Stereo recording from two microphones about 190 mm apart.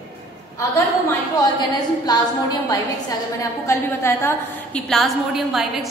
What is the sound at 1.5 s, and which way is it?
Speech, 20° left (ahead or behind).